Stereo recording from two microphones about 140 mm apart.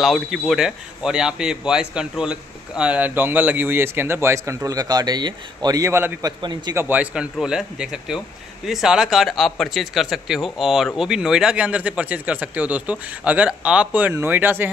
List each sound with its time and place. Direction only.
0.0 s a man's voice: centre (ahead or behind); by 6.3 s 20° right (ahead or behind)
6.4 s a man's voice: 30° right (ahead or behind)
6.7 s a man's voice: 15° right (ahead or behind)